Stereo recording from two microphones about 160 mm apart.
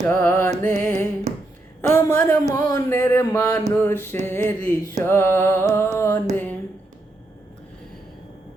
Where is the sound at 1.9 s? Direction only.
20° left (ahead or behind).